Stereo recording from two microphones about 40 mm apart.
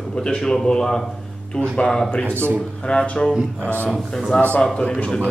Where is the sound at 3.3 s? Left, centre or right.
Right.